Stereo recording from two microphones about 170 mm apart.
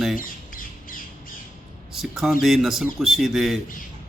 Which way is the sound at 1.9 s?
Centre (ahead or behind).